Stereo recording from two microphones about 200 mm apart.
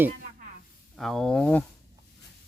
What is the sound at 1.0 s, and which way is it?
Speech, centre (ahead or behind).